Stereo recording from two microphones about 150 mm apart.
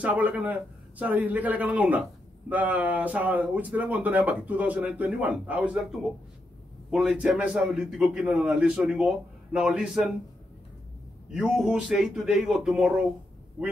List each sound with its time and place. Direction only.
0.0 s a man's voice: 10° right (ahead or behind)
11.3 s a man's voice: 5° right (ahead or behind)